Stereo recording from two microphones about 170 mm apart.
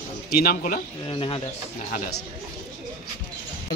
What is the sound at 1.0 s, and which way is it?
Speech, 30° left (ahead or behind).